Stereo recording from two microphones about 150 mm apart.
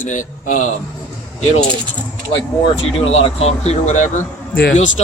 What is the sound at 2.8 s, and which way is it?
Speech, 40° left (ahead or behind).